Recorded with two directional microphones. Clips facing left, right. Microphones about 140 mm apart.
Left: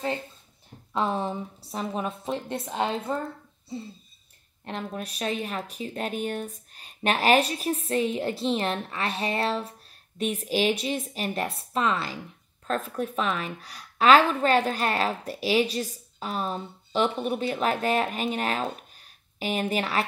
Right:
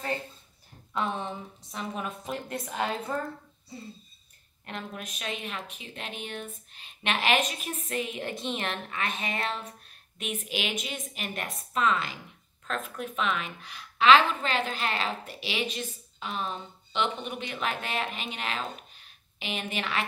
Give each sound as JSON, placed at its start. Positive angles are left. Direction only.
{"t": 1.1, "sound": "a woman's voice", "side_deg": 35}
{"t": 4.6, "sound": "a woman's voice", "side_deg": 35}